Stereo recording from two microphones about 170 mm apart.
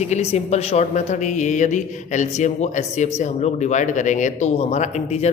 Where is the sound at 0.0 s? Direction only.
40° left (ahead or behind).